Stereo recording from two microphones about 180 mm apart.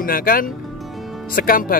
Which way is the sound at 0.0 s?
55° left (ahead or behind).